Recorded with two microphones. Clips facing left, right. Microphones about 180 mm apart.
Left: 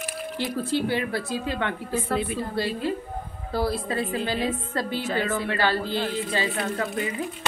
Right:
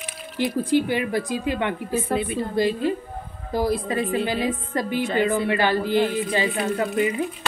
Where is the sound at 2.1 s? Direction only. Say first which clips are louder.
Right 2 dB; centre (ahead or behind).